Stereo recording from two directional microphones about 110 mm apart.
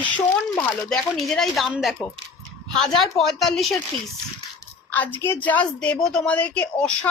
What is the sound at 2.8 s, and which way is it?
Speech, centre (ahead or behind).